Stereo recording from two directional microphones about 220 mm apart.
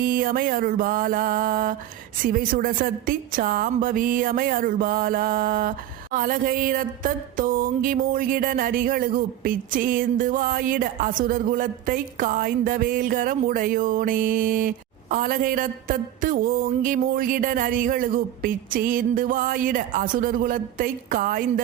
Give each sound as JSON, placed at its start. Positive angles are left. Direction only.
{"t": 0.0, "sound": "a woman's voice", "side_deg": -40}